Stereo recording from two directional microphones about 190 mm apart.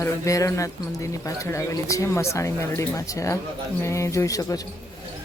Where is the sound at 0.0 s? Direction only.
15° left (ahead or behind).